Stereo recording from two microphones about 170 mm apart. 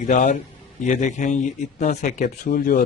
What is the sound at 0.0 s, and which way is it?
Speech, 45° left (ahead or behind).